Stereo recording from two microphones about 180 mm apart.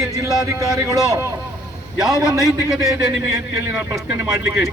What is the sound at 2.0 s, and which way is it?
Speech, 5° right (ahead or behind).